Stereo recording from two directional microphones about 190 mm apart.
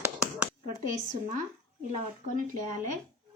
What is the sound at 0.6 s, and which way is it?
Speech, 40° right (ahead or behind).